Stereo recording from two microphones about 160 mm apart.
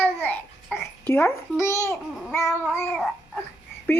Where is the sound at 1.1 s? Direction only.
15° left (ahead or behind).